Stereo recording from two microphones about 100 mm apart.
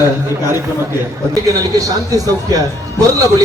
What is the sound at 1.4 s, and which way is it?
A man's voice, 35° right (ahead or behind).